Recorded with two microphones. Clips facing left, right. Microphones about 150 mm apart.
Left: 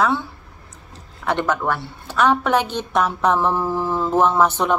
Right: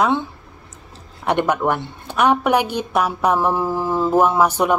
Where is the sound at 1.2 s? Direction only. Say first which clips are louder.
Right 3 dB; 15° right (ahead or behind).